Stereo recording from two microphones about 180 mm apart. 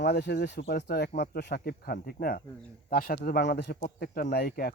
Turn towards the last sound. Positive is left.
turn(degrees=60)  # may be behind; listen again after turning